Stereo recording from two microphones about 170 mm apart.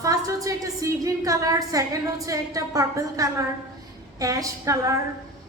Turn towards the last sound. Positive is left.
turn(degrees=-20)  # may be behind; listen again after turning